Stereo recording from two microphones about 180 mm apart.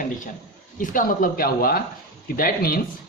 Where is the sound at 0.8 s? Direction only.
50° left (ahead or behind).